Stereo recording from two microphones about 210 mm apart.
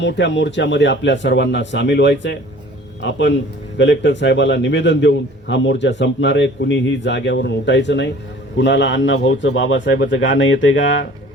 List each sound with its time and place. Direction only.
0.0 s a man's voice: 60° left (ahead or behind)